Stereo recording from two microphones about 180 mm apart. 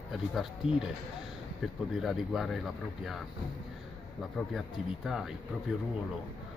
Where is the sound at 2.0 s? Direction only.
Centre (ahead or behind).